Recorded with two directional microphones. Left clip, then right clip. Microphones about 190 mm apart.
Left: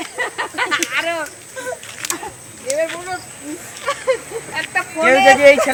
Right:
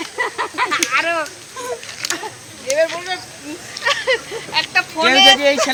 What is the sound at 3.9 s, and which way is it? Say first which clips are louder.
Speech: right 2 dB; 65° left (ahead or behind).